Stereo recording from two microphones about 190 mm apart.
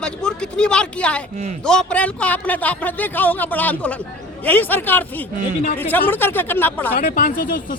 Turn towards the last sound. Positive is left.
turn(degrees=50)  # may be behind; listen again after turning